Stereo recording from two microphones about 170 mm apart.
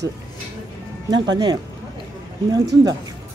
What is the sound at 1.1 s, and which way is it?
Speech, 25° right (ahead or behind).